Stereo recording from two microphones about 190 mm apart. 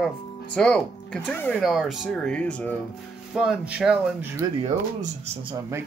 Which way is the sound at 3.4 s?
5° right (ahead or behind).